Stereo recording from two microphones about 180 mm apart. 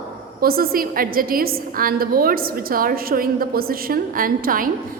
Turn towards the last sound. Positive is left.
turn(degrees=-50)  # may be behind; listen again after turning